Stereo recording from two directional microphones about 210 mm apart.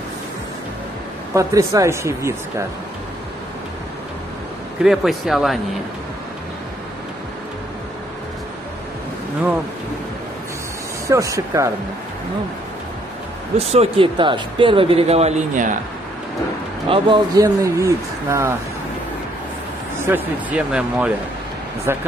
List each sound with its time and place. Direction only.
1.3 s speech: 15° right (ahead or behind)
4.8 s speech: centre (ahead or behind)
11.1 s speech: 15° right (ahead or behind)
13.6 s speech: 30° right (ahead or behind)
16.9 s speech: 20° right (ahead or behind)
20.0 s speech: 10° right (ahead or behind)